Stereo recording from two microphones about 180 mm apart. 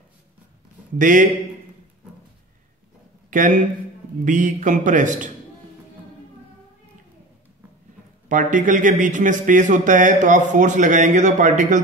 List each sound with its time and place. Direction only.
0.9 s speech: 45° right (ahead or behind)
3.3 s a man's voice: 45° right (ahead or behind)
8.3 s speech: 45° right (ahead or behind)